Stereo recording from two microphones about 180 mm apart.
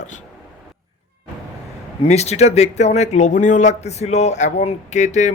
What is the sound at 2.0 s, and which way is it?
Speech, 35° left (ahead or behind).